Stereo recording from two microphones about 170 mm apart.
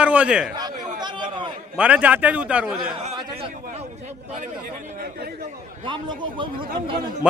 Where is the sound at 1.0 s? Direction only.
25° right (ahead or behind).